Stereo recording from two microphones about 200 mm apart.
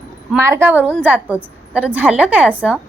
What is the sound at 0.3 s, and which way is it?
A woman's voice, 15° right (ahead or behind).